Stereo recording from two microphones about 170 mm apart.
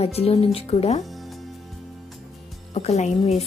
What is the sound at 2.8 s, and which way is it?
Speech, 40° left (ahead or behind).